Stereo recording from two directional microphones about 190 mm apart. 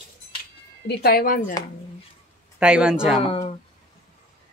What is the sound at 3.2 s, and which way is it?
Speech, 30° left (ahead or behind).